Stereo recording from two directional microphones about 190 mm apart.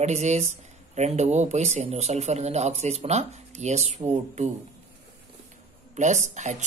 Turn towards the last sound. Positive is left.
turn(degrees=-40)  # may be behind; listen again after turning